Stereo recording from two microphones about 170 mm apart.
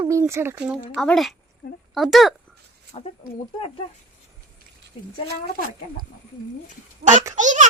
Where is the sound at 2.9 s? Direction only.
35° left (ahead or behind).